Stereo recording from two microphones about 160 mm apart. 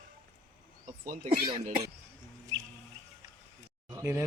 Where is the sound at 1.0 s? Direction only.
55° right (ahead or behind).